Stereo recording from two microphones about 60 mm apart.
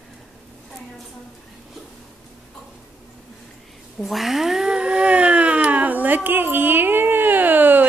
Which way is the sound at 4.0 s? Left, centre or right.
Centre.